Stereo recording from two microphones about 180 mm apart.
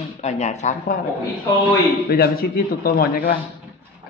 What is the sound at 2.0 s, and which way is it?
A man's voice, 55° left (ahead or behind).